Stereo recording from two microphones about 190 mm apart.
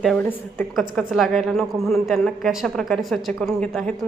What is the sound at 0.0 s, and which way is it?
A woman's voice, 5° left (ahead or behind).